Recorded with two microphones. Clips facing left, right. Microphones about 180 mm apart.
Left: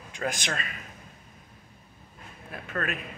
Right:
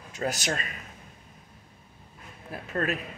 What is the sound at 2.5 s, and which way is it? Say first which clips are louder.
Speech: right 3 dB; 35° right (ahead or behind).